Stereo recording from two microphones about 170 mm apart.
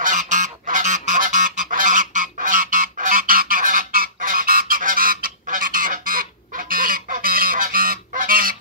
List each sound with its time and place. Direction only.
0.0 s goose: 50° right (ahead or behind)